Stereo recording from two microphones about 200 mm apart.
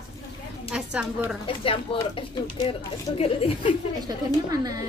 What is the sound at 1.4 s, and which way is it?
Speech, 25° left (ahead or behind).